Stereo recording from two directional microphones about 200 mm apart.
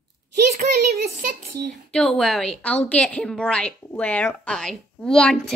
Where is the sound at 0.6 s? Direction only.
50° right (ahead or behind).